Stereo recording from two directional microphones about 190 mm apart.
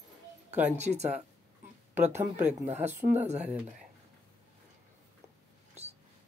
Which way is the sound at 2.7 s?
35° right (ahead or behind).